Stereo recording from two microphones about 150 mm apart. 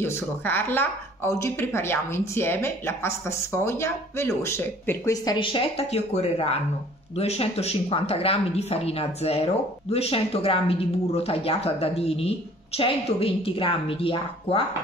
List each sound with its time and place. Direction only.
0.0 s speech: 15° left (ahead or behind); by 14.6 s 35° left (ahead or behind)